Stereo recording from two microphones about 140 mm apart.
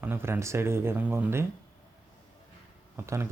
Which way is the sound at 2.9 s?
20° right (ahead or behind).